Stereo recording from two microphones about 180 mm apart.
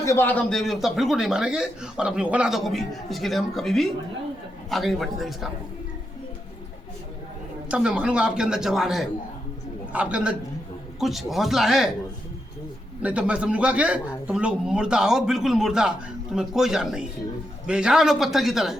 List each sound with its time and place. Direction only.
0.0 s a man's voice: 15° left (ahead or behind)
7.7 s a man's voice: 5° right (ahead or behind)
13.0 s a man's voice: 5° right (ahead or behind)